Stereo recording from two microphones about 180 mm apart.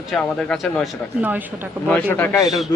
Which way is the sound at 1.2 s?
10° right (ahead or behind).